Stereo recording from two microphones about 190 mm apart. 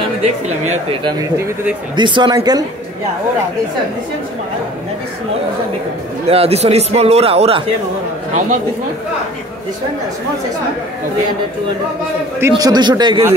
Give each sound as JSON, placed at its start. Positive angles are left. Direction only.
{"t": 2.0, "sound": "speech", "side_deg": -25}
{"t": 6.2, "sound": "speech", "side_deg": -30}
{"t": 12.4, "sound": "speech", "side_deg": -15}